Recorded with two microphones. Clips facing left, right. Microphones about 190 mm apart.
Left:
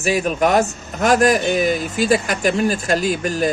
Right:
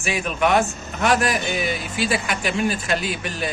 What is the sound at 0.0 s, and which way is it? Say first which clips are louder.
Speech: left 5 dB; 40° left (ahead or behind).